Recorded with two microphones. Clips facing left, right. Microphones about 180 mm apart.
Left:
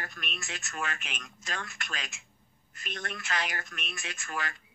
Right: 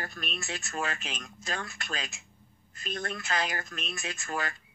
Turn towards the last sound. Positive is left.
turn(degrees=-35)  # may be behind; listen again after turning